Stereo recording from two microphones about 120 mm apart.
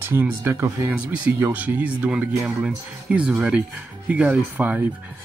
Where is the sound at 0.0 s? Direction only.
20° right (ahead or behind).